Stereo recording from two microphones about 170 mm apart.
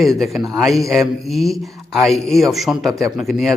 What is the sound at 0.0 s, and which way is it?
A man's voice, centre (ahead or behind).